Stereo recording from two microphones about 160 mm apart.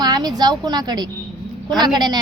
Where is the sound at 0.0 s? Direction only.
25° right (ahead or behind).